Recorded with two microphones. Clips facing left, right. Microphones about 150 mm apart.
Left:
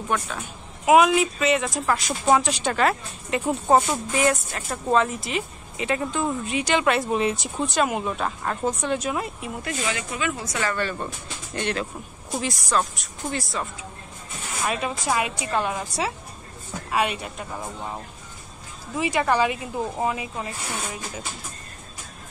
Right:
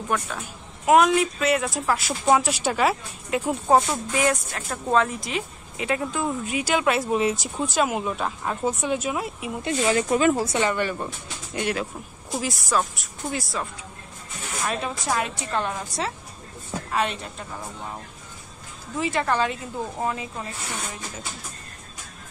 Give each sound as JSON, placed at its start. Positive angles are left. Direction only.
{"t": 0.1, "sound": "speech", "side_deg": -5}
{"t": 9.8, "sound": "speech", "side_deg": -40}
{"t": 10.7, "sound": "speech", "side_deg": -15}
{"t": 16.9, "sound": "speech", "side_deg": 10}
{"t": 18.9, "sound": "speech", "side_deg": 15}